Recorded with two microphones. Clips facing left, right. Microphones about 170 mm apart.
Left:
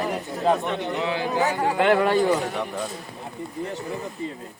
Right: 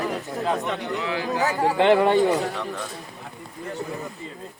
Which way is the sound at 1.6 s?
25° right (ahead or behind).